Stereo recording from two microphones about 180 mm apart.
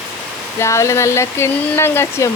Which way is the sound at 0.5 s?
15° left (ahead or behind).